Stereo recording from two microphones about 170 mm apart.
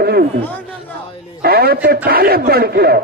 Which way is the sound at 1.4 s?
65° right (ahead or behind).